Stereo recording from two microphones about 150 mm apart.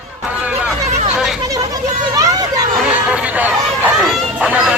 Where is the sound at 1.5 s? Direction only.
25° right (ahead or behind).